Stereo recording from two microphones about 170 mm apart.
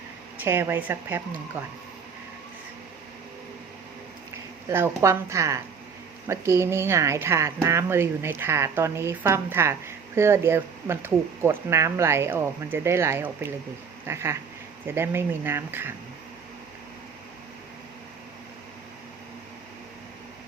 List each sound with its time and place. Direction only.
0.4 s speech: 15° right (ahead or behind)
4.7 s speech: 15° right (ahead or behind)